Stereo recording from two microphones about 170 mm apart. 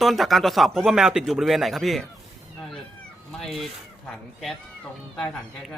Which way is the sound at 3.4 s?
Centre (ahead or behind).